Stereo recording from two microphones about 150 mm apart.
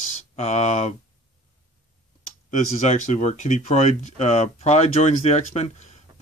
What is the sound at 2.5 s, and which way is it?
Speech, 55° left (ahead or behind).